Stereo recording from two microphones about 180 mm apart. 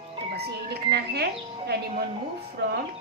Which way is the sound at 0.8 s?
65° right (ahead or behind).